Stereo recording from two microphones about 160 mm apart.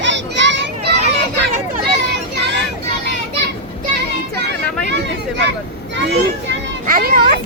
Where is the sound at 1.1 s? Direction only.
90° right.